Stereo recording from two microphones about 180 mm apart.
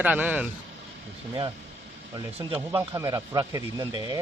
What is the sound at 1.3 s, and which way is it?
Speech, 30° right (ahead or behind).